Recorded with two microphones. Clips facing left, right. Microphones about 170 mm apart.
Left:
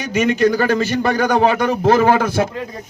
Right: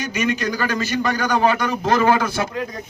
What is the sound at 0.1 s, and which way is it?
A man's voice, 50° left (ahead or behind).